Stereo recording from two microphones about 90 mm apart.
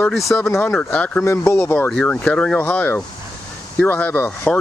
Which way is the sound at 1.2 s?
30° left (ahead or behind).